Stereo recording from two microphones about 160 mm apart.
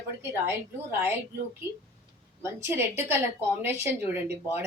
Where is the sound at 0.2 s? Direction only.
15° right (ahead or behind).